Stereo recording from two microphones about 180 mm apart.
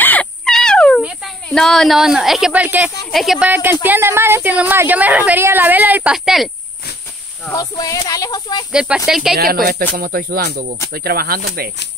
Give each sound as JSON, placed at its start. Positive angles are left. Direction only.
{"t": 0.0, "sound": "frog", "side_deg": 10}
{"t": 1.0, "sound": "a woman's voice", "side_deg": 0}
{"t": 7.4, "sound": "speech", "side_deg": 20}
{"t": 8.7, "sound": "speech", "side_deg": -5}
{"t": 9.4, "sound": "speech", "side_deg": -55}